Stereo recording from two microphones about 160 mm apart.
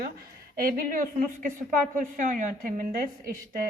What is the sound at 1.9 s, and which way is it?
A woman's voice, 50° right (ahead or behind).